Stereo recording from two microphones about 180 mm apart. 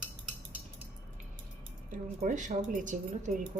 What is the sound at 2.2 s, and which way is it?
Speech, 45° right (ahead or behind).